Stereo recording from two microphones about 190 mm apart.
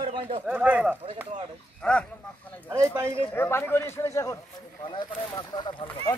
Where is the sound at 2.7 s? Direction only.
15° right (ahead or behind).